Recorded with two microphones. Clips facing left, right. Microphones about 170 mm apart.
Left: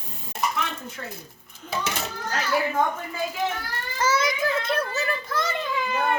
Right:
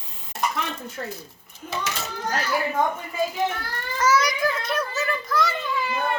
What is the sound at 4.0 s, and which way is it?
Children playing, 25° left (ahead or behind).